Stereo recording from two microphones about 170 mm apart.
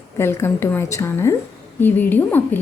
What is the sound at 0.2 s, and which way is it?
A woman's voice, 15° left (ahead or behind).